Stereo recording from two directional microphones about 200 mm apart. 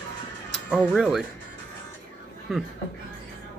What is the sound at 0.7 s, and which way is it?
Speech, 5° right (ahead or behind).